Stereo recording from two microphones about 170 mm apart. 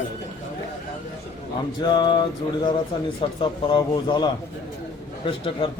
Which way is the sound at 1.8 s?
25° left (ahead or behind).